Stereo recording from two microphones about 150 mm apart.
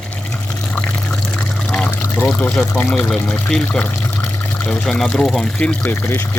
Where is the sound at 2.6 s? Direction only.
15° left (ahead or behind).